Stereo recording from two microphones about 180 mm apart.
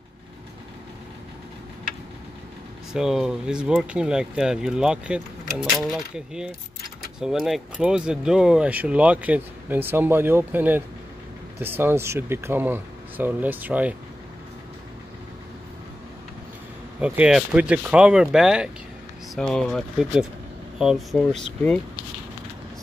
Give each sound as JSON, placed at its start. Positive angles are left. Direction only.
{"t": 2.9, "sound": "speech", "side_deg": -5}
{"t": 17.0, "sound": "speech", "side_deg": -5}